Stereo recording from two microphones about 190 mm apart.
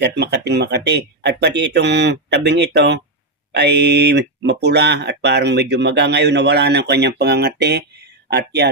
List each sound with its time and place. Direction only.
0.0 s speech: 65° right (ahead or behind)